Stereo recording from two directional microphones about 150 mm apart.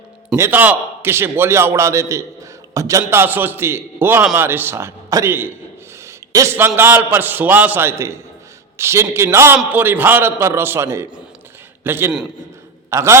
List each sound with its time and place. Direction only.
0.3 s a man's voice: 15° right (ahead or behind)